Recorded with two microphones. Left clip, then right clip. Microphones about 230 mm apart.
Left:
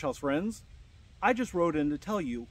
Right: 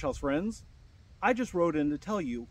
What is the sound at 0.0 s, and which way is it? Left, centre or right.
Speech, centre.